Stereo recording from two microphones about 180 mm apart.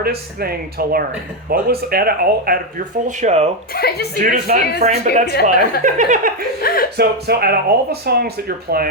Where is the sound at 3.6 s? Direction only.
60° left (ahead or behind).